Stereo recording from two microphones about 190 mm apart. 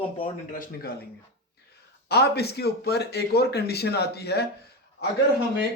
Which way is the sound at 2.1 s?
60° left (ahead or behind).